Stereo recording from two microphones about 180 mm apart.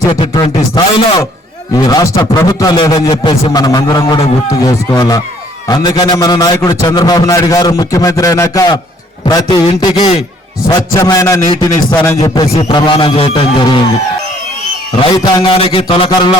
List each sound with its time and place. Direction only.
0.1 s a man's voice: 25° left (ahead or behind)
15.1 s a man's voice: 20° left (ahead or behind)
15.5 s a sound: 30° left (ahead or behind)